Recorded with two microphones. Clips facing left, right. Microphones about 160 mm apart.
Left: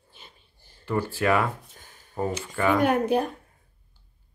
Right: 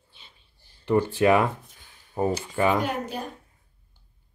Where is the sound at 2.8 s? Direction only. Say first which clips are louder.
Left 7 dB; 55° left (ahead or behind).